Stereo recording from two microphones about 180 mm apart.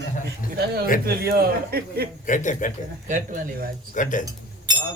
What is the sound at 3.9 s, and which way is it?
Speech, 45° left (ahead or behind).